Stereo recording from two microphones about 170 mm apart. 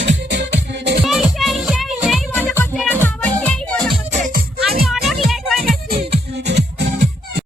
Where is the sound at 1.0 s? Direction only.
Centre (ahead or behind).